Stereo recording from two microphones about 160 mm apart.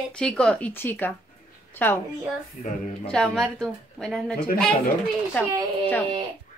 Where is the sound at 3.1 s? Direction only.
Centre (ahead or behind).